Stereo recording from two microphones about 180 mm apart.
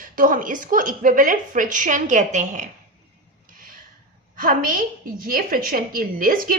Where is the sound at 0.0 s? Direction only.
50° right (ahead or behind).